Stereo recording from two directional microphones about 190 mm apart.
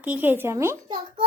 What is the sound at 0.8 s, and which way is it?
Speech, 25° right (ahead or behind).